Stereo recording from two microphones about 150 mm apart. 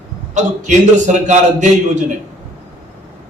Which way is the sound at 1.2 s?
55° right (ahead or behind).